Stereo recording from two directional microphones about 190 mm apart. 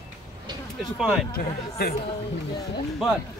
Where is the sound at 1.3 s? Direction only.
55° left (ahead or behind).